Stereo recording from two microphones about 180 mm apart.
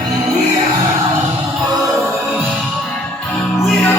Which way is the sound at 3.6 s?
Centre (ahead or behind).